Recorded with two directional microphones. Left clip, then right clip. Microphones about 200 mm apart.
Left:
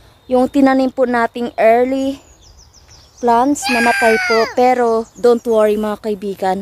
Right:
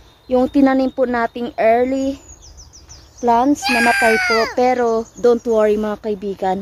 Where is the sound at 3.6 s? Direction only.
Centre (ahead or behind).